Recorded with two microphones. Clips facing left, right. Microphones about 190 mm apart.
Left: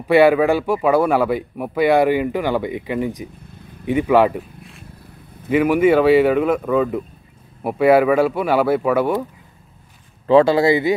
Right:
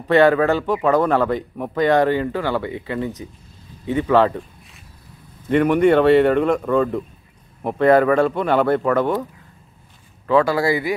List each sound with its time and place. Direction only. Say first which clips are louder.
0.1 s speech: left 2 dB; 10° left (ahead or behind)
5.5 s speech: even; 5° left (ahead or behind)
10.2 s speech: left 4 dB; 25° left (ahead or behind)